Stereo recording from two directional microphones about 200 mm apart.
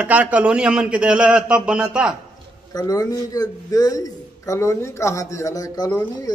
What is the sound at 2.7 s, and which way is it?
Speech, 20° left (ahead or behind).